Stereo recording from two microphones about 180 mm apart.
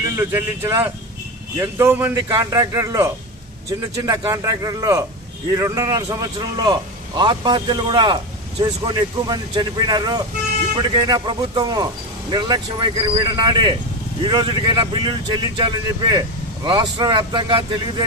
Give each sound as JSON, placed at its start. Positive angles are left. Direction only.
{"t": 0.2, "sound": "a man's voice", "side_deg": -15}